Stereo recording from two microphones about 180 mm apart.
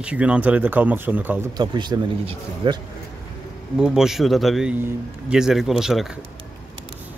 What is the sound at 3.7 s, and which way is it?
Speech, 5° right (ahead or behind).